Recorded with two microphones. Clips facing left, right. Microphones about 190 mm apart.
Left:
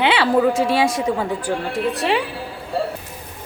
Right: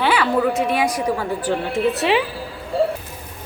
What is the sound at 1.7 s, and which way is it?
Speech, centre (ahead or behind).